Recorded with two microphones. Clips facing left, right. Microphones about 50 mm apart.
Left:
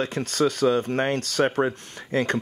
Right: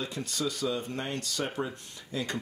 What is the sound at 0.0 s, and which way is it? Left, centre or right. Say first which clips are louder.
Speech: left 10 dB; left.